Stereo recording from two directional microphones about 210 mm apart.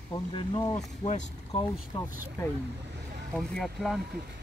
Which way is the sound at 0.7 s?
30° left (ahead or behind).